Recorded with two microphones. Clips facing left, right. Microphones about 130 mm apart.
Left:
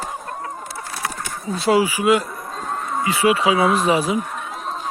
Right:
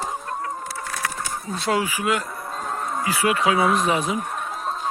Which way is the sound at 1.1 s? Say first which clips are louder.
Left 2 dB; 5° left (ahead or behind).